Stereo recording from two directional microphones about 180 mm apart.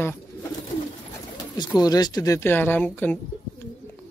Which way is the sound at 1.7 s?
20° left (ahead or behind).